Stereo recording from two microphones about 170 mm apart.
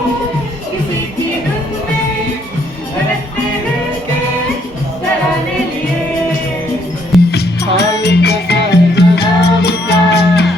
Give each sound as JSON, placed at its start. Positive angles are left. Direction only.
{"t": 7.3, "sound": "music", "side_deg": 75}